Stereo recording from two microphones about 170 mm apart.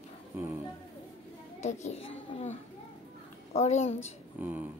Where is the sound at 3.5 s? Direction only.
40° left (ahead or behind).